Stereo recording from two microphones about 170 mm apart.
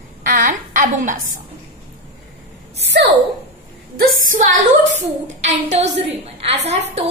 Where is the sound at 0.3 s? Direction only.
50° right (ahead or behind).